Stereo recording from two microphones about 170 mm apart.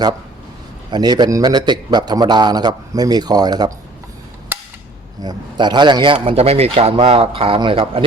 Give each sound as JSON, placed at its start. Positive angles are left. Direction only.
{"t": 0.9, "sound": "a man's voice", "side_deg": -25}
{"t": 5.2, "sound": "a man's voice", "side_deg": -25}